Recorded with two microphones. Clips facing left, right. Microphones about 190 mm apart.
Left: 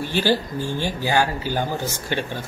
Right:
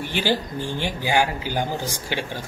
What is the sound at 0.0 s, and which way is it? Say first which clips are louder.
A man's voice: left 3 dB; 15° right (ahead or behind).